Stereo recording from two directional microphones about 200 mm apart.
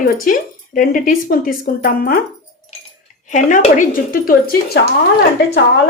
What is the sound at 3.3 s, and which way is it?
Speech, 40° left (ahead or behind).